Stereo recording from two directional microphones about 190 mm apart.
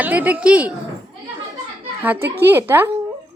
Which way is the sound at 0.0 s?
10° right (ahead or behind).